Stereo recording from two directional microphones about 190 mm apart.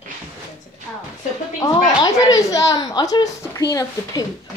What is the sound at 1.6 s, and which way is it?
A woman's voice, 20° left (ahead or behind).